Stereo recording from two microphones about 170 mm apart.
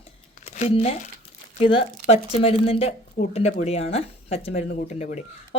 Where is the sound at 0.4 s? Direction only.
40° left (ahead or behind).